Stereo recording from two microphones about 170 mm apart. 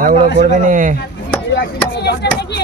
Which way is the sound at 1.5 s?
80° left.